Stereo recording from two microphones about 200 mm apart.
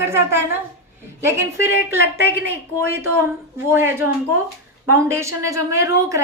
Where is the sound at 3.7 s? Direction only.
10° right (ahead or behind).